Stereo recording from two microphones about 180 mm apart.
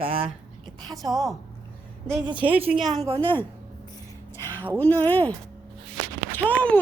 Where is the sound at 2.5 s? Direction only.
30° right (ahead or behind).